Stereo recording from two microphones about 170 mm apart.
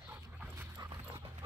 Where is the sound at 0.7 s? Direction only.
25° right (ahead or behind).